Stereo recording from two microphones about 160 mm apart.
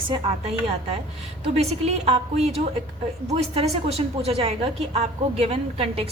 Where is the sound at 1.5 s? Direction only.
40° right (ahead or behind).